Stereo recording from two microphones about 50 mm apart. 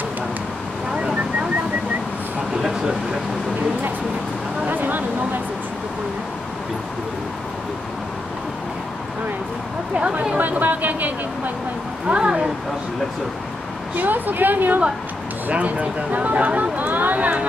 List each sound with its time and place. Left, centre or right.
0.9 s a sound: right
4.6 s a sound: right
10.3 s speech: right
12.1 s speech: centre
13.9 s speech: right
15.5 s speech: right